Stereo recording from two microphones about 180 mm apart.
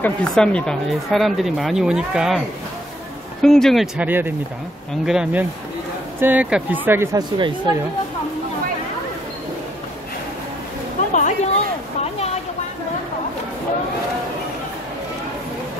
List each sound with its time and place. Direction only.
0.0 s speech: 5° left (ahead or behind)
3.4 s speech: centre (ahead or behind); by 7.7 s 25° right (ahead or behind)
11.1 s a sound: 40° left (ahead or behind)